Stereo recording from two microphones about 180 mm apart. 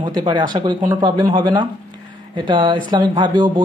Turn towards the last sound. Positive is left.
turn(degrees=-25)  # may be behind; listen again after turning